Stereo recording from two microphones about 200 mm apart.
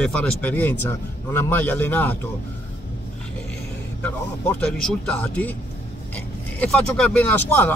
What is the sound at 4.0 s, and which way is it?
Speech, 10° left (ahead or behind).